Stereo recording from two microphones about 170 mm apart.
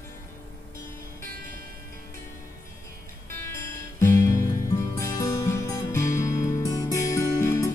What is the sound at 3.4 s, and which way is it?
Music, 15° left (ahead or behind).